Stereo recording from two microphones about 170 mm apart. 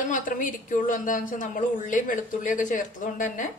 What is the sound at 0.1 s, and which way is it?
A woman's voice, 50° left (ahead or behind).